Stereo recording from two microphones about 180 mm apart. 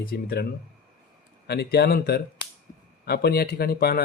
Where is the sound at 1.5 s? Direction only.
65° left (ahead or behind).